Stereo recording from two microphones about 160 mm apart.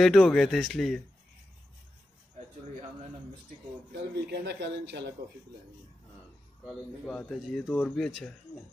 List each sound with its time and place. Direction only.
0.0 s speech: 5° left (ahead or behind)
3.9 s speech: 90° right
6.6 s speech: 5° left (ahead or behind)